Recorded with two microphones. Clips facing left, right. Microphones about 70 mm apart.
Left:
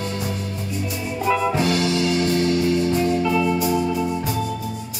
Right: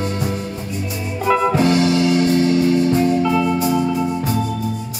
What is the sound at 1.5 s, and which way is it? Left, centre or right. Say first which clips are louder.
Music: right 5 dB; right.